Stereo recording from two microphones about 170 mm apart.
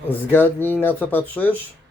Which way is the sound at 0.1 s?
10° left (ahead or behind).